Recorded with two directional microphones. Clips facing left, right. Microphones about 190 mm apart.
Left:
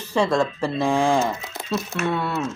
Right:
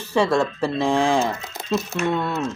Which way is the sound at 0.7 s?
10° left (ahead or behind).